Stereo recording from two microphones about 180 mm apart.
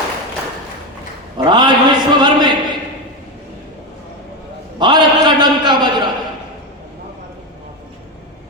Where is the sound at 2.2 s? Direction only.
25° right (ahead or behind).